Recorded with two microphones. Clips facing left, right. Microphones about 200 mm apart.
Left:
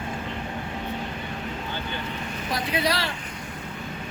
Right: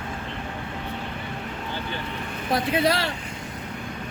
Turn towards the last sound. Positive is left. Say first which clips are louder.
# right 4 dB
turn(degrees=-50)  # may be behind; listen again after turning